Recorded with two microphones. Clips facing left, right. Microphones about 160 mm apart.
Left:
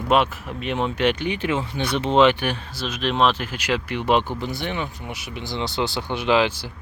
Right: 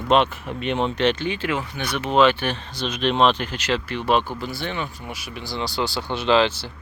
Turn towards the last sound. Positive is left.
turn(degrees=10)  # may be behind; listen again after turning